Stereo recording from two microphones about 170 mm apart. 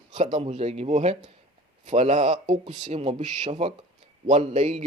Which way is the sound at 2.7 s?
30° right (ahead or behind).